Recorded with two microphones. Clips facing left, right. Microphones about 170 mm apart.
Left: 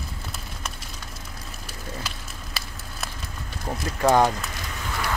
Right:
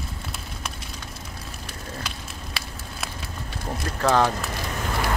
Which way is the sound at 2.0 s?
Centre (ahead or behind).